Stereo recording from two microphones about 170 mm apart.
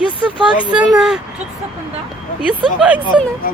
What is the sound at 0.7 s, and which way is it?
Speech, 5° right (ahead or behind).